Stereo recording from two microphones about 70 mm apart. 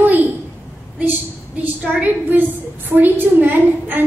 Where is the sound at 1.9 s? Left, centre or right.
Right.